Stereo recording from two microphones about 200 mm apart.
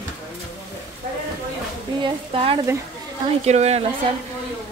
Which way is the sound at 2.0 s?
25° right (ahead or behind).